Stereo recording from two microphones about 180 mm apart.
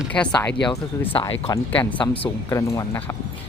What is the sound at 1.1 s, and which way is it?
Speech, 30° left (ahead or behind).